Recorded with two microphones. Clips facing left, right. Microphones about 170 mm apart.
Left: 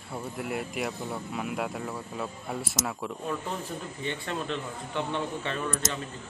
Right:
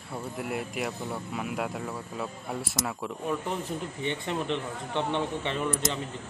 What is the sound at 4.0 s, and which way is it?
Speech, 20° right (ahead or behind).